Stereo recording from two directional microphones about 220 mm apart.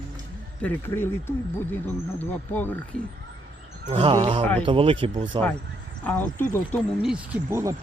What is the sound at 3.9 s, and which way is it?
Speech, 25° right (ahead or behind).